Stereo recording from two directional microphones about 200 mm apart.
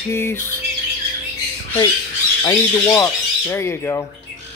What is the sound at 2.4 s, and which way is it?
Speech, 15° left (ahead or behind).